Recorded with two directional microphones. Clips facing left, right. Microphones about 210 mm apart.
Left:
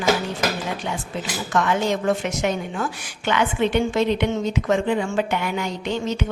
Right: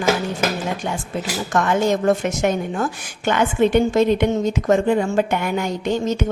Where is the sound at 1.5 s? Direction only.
45° right (ahead or behind).